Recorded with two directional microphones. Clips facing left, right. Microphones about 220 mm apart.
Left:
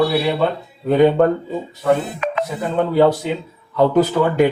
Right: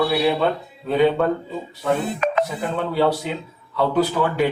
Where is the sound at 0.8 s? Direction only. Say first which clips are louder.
Left 5 dB; 45° left (ahead or behind).